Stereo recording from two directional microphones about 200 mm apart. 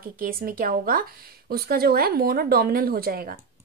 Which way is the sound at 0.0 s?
45° right (ahead or behind).